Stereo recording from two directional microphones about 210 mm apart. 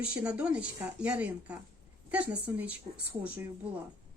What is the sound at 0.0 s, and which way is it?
Speech, 5° right (ahead or behind).